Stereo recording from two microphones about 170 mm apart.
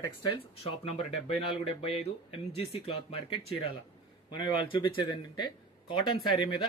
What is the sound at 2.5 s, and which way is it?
Speech, 35° left (ahead or behind).